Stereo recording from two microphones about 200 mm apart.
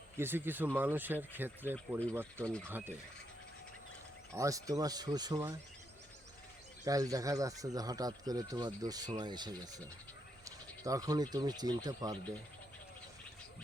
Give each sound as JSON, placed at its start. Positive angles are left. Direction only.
{"t": 0.2, "sound": "speech", "side_deg": -10}
{"t": 2.4, "sound": "speech", "side_deg": 5}
{"t": 2.6, "sound": "speech", "side_deg": -10}
{"t": 4.4, "sound": "speech", "side_deg": -15}
{"t": 6.8, "sound": "speech", "side_deg": -15}